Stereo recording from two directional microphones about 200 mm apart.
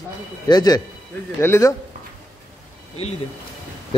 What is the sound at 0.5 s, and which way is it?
Speech, 20° left (ahead or behind).